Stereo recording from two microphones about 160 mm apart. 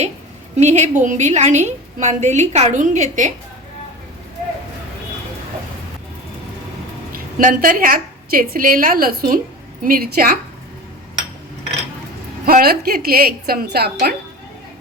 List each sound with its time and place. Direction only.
0.5 s a woman's voice: 45° right (ahead or behind)
7.1 s a woman's voice: 60° right (ahead or behind)
12.5 s a woman's voice: 65° right (ahead or behind)